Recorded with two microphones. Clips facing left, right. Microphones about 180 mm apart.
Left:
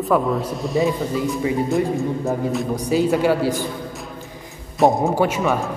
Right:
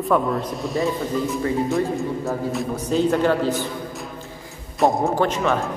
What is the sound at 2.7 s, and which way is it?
Speech, 10° left (ahead or behind).